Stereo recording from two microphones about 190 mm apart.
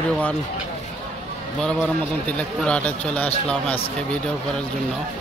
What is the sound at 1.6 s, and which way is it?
A man's voice, 5° left (ahead or behind).